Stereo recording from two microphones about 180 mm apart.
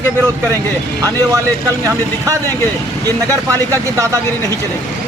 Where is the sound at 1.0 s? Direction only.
15° right (ahead or behind).